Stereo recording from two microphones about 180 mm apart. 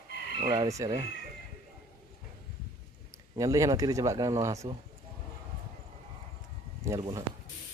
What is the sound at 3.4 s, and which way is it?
Speech, 20° right (ahead or behind).